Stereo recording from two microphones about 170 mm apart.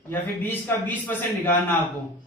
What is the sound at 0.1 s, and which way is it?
A man's voice, 10° left (ahead or behind).